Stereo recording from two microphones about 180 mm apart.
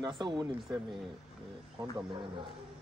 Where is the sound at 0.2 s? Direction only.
25° right (ahead or behind).